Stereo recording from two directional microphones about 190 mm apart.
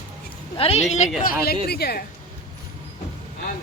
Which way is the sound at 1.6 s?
55° left (ahead or behind).